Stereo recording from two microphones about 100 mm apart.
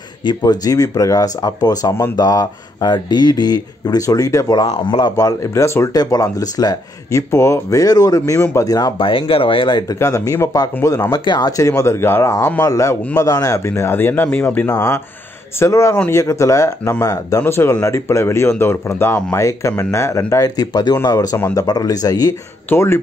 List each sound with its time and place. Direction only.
0.2 s speech: 45° left (ahead or behind); by 5.9 s 30° left (ahead or behind)
5.9 s speech: 40° left (ahead or behind)
8.9 s speech: 60° left (ahead or behind)
9.9 s speech: 30° left (ahead or behind)
14.7 s speech: 30° left (ahead or behind)
22.7 s speech: 25° left (ahead or behind)